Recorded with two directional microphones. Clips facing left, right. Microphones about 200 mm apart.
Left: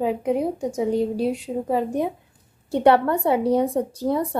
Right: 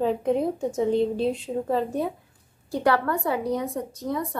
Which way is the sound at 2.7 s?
25° left (ahead or behind).